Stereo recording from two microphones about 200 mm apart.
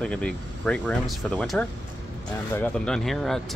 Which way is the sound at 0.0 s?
5° left (ahead or behind).